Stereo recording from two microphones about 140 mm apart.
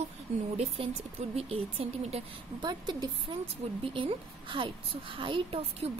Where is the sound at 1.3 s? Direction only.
45° right (ahead or behind).